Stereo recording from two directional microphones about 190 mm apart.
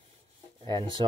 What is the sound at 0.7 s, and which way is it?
Speech, 25° right (ahead or behind).